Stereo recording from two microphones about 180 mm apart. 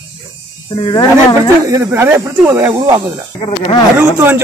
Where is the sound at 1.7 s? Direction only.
15° right (ahead or behind).